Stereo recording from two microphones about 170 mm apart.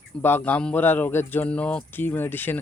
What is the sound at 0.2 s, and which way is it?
Speech, 10° left (ahead or behind).